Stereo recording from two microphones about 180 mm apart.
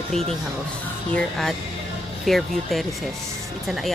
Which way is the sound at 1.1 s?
Centre (ahead or behind).